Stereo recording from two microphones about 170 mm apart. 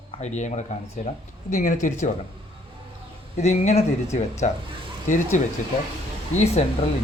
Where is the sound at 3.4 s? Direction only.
40° left (ahead or behind).